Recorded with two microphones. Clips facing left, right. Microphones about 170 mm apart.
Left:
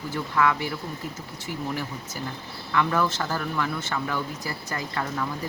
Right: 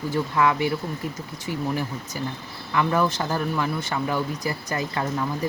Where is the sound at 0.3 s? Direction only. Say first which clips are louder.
Right 2 dB; 20° right (ahead or behind).